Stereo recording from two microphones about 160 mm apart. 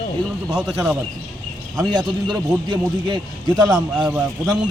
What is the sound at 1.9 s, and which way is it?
A man's voice, 25° right (ahead or behind).